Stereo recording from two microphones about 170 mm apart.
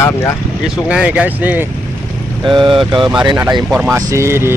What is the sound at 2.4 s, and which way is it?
Speech, 30° right (ahead or behind).